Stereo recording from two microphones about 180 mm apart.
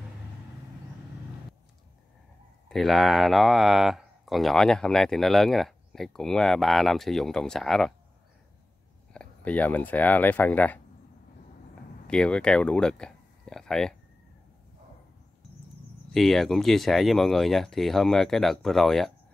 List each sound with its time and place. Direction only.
2.7 s speech: centre (ahead or behind)
9.1 s speech: 5° left (ahead or behind)
12.1 s speech: 5° left (ahead or behind)
16.1 s speech: centre (ahead or behind)